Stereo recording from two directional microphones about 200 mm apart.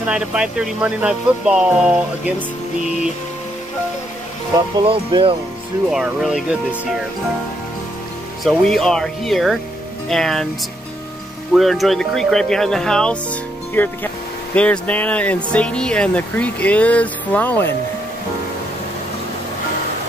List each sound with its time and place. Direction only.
0.0 s speech: 5° right (ahead or behind)
4.8 s speech: 25° right (ahead or behind)
5.9 s speech: centre (ahead or behind)
8.5 s speech: centre (ahead or behind)
11.5 s speech: centre (ahead or behind)